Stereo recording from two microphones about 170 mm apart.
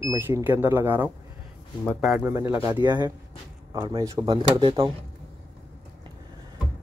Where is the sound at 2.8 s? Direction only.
25° right (ahead or behind).